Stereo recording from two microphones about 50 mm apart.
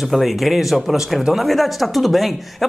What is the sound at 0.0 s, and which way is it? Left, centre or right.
Speech, centre.